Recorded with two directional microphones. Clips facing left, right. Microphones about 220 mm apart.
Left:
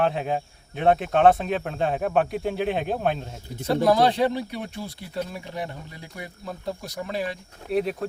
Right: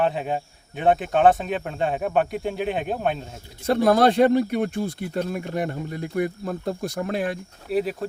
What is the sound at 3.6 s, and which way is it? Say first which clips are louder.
Speech: right 2 dB; 50° right (ahead or behind).